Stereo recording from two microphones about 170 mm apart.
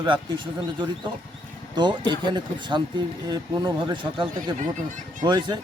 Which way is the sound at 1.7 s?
25° right (ahead or behind).